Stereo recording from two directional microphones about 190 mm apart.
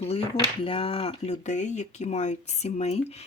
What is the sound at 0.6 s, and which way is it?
Speech, 30° left (ahead or behind).